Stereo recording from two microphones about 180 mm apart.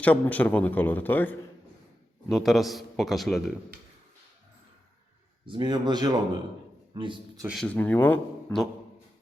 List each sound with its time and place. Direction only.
0.0 s a man's voice: 10° left (ahead or behind)
5.5 s speech: 25° right (ahead or behind)
7.4 s a man's voice: centre (ahead or behind)